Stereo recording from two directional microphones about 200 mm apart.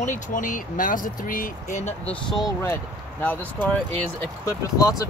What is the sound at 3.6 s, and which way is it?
Speech, 5° left (ahead or behind).